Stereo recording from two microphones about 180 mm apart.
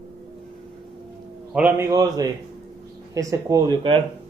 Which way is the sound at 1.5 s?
10° right (ahead or behind).